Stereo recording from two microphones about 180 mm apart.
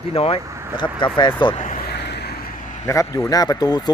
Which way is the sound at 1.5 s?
45° left (ahead or behind).